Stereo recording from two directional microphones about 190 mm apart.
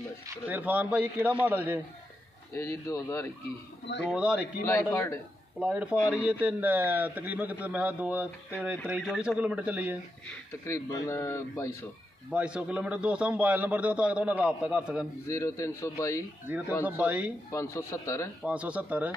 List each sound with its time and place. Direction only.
0.3 s a man's voice: 10° right (ahead or behind)
2.5 s speech: 15° left (ahead or behind)
4.1 s speech: 5° right (ahead or behind)
4.9 s speech: 15° left (ahead or behind)
5.6 s a man's voice: 5° right (ahead or behind)
10.2 s speech: 15° left (ahead or behind)
12.3 s a man's voice: 5° right (ahead or behind)
15.2 s speech: 15° left (ahead or behind)
16.4 s a man's voice: 10° right (ahead or behind)
17.5 s speech: 15° left (ahead or behind)
18.4 s a man's voice: 5° right (ahead or behind)